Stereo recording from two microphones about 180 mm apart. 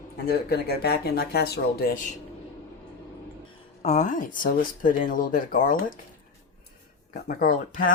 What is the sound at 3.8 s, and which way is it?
Speech, 40° left (ahead or behind).